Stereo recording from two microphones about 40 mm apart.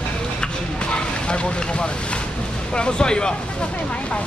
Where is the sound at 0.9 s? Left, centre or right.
Left.